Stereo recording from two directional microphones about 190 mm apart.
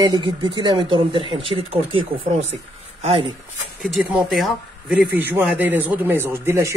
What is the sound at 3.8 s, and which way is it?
Speech, 5° right (ahead or behind).